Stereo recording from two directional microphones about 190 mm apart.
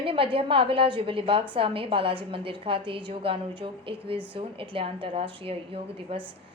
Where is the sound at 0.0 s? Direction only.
30° right (ahead or behind).